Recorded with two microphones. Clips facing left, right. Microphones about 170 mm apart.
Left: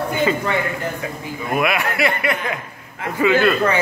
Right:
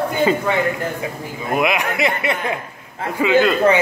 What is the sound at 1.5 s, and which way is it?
Speech, 20° right (ahead or behind).